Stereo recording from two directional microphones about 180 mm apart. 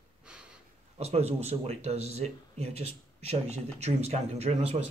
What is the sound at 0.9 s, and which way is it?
Speech, 35° right (ahead or behind).